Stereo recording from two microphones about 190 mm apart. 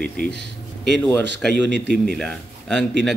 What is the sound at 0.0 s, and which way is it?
A man's voice, 60° right (ahead or behind).